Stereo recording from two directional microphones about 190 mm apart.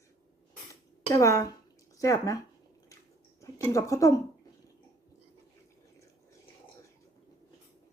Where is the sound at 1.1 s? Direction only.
15° left (ahead or behind).